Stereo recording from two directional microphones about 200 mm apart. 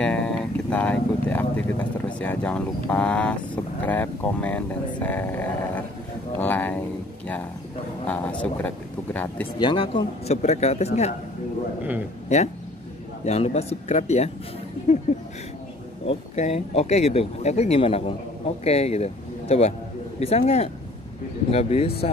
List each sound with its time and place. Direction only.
0.0 s vehicle: 5° left (ahead or behind)
2.1 s speech: 5° left (ahead or behind)
8.1 s speech: 5° left (ahead or behind)
9.6 s speech: 25° left (ahead or behind)
13.2 s speech: 35° left (ahead or behind)
16.1 s speech: 35° left (ahead or behind)